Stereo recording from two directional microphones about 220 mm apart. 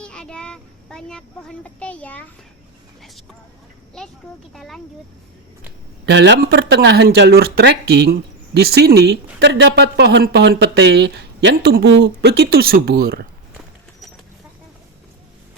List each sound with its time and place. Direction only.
0.0 s speech: 5° left (ahead or behind)
4.5 s speech: centre (ahead or behind)
6.1 s speech: 50° right (ahead or behind)
8.6 s speech: 45° right (ahead or behind)